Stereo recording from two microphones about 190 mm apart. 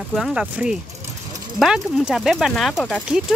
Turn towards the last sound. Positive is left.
turn(degrees=0)  # may be behind; listen again after turning